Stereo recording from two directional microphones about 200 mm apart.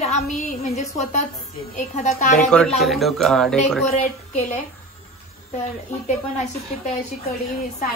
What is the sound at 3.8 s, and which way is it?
Speech, 35° left (ahead or behind).